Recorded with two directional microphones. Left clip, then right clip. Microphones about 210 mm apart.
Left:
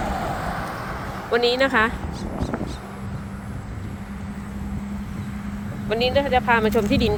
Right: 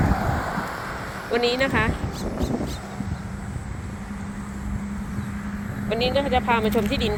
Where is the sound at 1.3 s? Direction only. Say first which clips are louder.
Left 3 dB; 30° left (ahead or behind).